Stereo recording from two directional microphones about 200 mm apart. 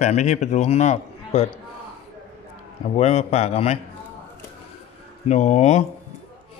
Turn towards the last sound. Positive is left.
turn(degrees=35)  # may be behind; listen again after turning